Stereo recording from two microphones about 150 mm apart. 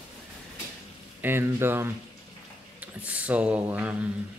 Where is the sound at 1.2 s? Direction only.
15° right (ahead or behind).